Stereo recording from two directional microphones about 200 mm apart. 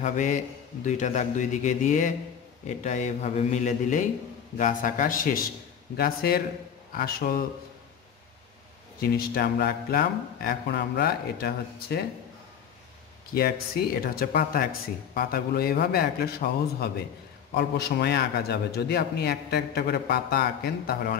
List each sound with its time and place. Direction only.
0.0 s a man's voice: 40° left (ahead or behind)
9.0 s speech: 50° left (ahead or behind)
13.3 s speech: 50° left (ahead or behind)